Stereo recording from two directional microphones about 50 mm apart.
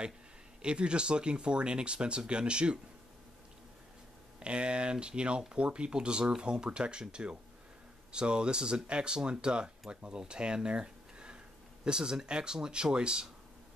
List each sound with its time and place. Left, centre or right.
0.6 s speech: centre
4.4 s speech: right